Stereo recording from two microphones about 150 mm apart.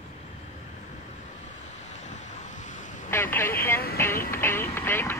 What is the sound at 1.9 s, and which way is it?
Vehicle, 50° left (ahead or behind).